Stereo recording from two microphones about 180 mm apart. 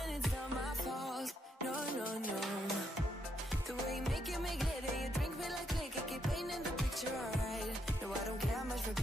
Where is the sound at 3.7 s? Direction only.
Centre (ahead or behind).